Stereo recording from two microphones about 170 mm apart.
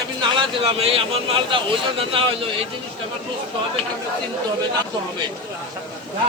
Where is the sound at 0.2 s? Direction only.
30° right (ahead or behind).